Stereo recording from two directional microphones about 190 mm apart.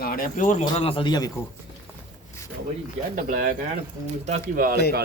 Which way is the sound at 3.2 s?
40° right (ahead or behind).